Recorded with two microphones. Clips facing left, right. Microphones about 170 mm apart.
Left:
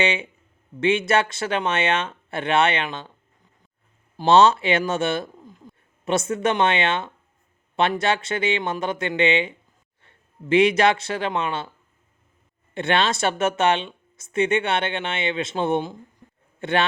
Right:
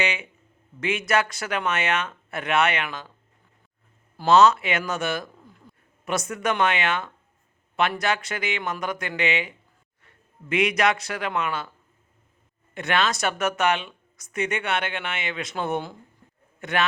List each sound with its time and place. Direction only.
0.0 s speech: 30° left (ahead or behind)
4.2 s speech: 30° left (ahead or behind)
12.7 s a man's voice: 30° left (ahead or behind)